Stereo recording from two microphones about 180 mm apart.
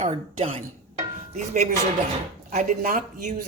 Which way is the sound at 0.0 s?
35° right (ahead or behind).